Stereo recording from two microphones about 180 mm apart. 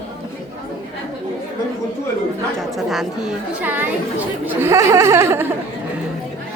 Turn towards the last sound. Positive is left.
turn(degrees=-15)  # may be behind; listen again after turning